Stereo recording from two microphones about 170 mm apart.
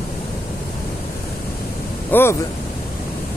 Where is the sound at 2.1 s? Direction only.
15° left (ahead or behind).